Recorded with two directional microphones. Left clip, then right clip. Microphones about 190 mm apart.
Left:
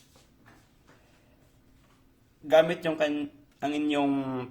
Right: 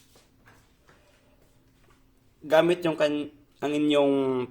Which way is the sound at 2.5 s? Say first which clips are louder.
Right 1 dB; 40° right (ahead or behind).